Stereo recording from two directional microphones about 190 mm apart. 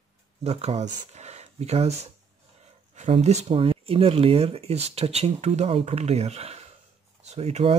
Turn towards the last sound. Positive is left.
turn(degrees=-35)  # may be behind; listen again after turning